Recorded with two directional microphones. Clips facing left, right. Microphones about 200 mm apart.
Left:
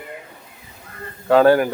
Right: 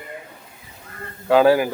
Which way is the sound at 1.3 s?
5° right (ahead or behind).